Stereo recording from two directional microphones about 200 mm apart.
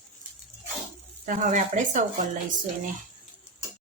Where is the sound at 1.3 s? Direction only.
40° right (ahead or behind).